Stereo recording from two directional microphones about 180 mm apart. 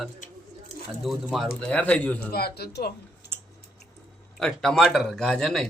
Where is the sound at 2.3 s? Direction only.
60° left (ahead or behind).